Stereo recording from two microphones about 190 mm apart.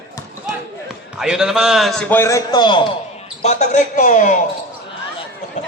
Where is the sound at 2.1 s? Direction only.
15° left (ahead or behind).